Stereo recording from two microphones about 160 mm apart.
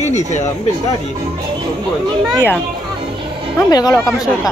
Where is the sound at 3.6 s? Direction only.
25° left (ahead or behind).